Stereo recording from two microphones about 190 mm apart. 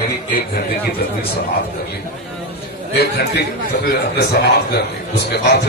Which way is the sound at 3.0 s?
60° left (ahead or behind).